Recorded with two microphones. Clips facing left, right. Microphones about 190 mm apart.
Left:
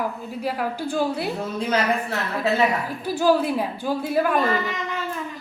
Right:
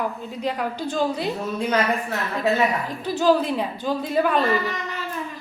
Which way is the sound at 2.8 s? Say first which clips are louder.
Even; 10° left (ahead or behind).